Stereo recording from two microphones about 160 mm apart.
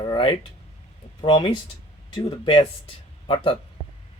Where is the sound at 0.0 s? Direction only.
30° left (ahead or behind).